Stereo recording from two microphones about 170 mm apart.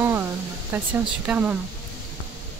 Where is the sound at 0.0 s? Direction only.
10° right (ahead or behind).